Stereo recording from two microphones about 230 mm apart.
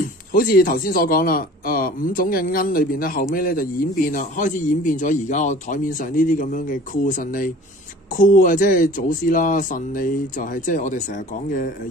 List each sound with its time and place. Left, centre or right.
0.0 s speech: left